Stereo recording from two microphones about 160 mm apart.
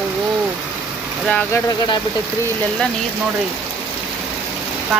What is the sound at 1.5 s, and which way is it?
Speech, 25° left (ahead or behind).